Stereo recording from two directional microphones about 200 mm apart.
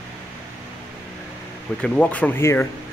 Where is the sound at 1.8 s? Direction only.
5° left (ahead or behind).